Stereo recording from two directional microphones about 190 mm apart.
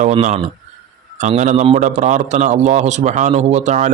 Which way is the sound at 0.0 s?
40° right (ahead or behind).